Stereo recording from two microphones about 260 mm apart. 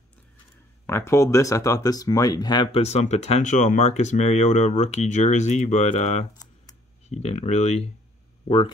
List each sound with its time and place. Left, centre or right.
0.8 s speech: centre
6.3 s computer keyboard: centre
7.1 s speech: left